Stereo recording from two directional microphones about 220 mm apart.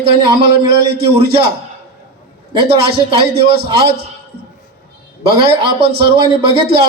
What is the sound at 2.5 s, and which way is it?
A man's voice, 25° right (ahead or behind).